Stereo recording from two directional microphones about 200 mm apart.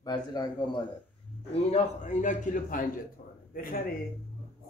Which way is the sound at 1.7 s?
40° left (ahead or behind).